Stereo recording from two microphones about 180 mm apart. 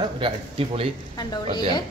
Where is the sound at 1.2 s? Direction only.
20° left (ahead or behind).